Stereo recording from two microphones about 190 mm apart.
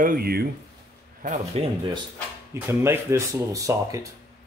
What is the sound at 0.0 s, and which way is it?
Speech, 50° right (ahead or behind).